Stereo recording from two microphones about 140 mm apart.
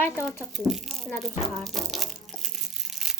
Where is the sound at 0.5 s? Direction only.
Centre (ahead or behind).